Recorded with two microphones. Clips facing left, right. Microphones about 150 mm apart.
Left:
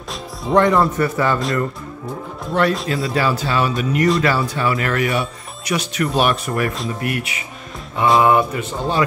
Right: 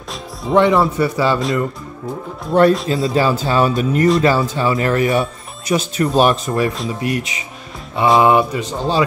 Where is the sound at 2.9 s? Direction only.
30° right (ahead or behind).